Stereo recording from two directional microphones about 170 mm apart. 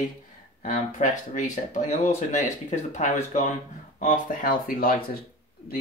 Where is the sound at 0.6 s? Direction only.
45° left (ahead or behind).